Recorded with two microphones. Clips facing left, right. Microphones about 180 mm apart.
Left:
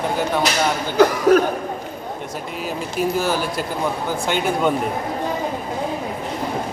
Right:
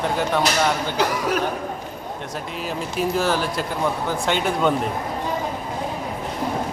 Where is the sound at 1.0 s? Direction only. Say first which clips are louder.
Left 11 dB; 50° left (ahead or behind).